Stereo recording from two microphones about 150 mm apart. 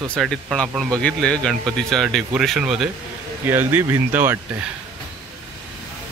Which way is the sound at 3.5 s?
15° right (ahead or behind).